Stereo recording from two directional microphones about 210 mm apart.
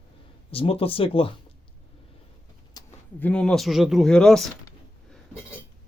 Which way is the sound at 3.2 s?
5° left (ahead or behind).